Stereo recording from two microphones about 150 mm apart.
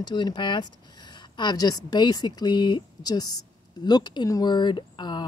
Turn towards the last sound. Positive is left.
turn(degrees=30)  # may be behind; listen again after turning